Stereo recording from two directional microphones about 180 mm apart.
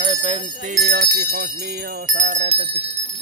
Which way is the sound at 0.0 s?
40° right (ahead or behind).